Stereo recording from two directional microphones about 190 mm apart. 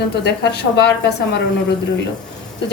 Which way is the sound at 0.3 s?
60° left (ahead or behind).